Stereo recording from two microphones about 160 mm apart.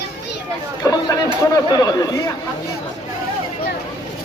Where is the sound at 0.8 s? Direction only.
20° left (ahead or behind).